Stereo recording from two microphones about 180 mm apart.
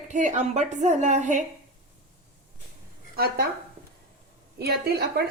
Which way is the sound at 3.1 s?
60° right (ahead or behind).